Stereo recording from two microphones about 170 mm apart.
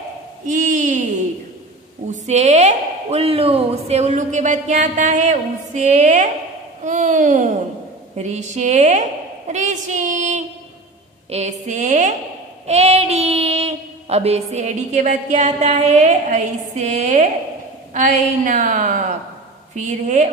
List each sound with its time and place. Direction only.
0.5 s speech: 45° right (ahead or behind)
12.6 s child singing: 40° right (ahead or behind)
17.9 s speech: 50° right (ahead or behind)